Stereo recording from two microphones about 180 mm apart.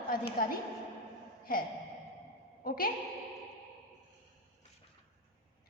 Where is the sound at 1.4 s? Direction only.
55° left (ahead or behind).